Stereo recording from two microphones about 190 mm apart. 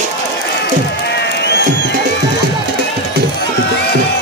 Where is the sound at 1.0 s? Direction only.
60° left (ahead or behind).